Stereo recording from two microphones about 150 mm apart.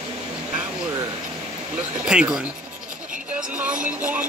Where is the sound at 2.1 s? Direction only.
5° right (ahead or behind).